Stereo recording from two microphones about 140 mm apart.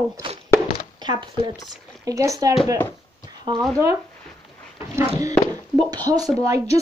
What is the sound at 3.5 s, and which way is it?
Speech, 35° right (ahead or behind).